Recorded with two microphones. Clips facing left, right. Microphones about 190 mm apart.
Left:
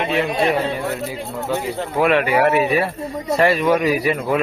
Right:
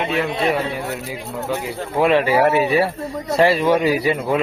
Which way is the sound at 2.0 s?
30° right (ahead or behind).